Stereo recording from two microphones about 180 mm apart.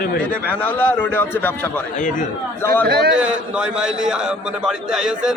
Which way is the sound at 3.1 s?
5° right (ahead or behind).